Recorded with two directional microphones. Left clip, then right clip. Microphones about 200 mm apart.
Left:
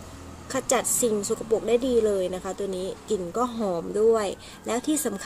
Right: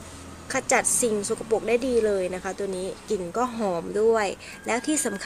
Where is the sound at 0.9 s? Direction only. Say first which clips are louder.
Even; 20° right (ahead or behind).